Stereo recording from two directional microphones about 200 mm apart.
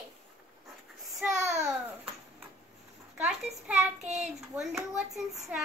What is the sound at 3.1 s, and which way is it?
Speech, centre (ahead or behind).